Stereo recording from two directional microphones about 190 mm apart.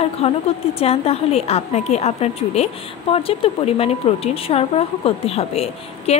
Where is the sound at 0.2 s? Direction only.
30° left (ahead or behind).